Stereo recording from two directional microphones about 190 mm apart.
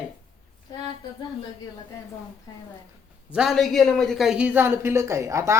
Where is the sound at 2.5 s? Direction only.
20° left (ahead or behind).